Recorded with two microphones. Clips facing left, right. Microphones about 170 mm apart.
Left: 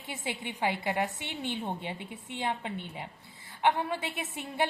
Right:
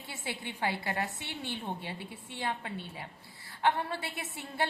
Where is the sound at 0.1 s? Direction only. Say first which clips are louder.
Left 3 dB; 20° left (ahead or behind).